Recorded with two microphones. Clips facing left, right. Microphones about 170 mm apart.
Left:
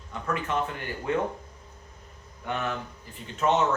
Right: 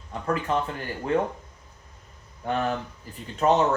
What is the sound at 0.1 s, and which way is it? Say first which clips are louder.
Speech: right 4 dB; 35° right (ahead or behind).